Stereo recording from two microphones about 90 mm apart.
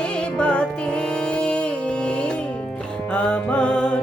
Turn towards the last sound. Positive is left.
turn(degrees=10)  # may be behind; listen again after turning